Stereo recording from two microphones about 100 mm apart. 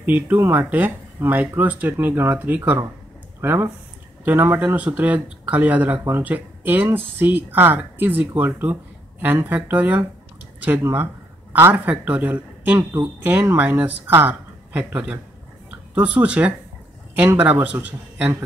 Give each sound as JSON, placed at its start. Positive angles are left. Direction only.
{"t": 0.0, "sound": "speech", "side_deg": -20}
{"t": 17.7, "sound": "speech", "side_deg": -15}